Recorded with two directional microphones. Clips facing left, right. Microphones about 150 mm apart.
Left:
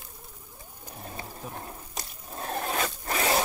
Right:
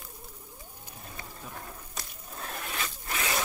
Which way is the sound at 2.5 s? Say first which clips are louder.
Left 9 dB; 45° left (ahead or behind).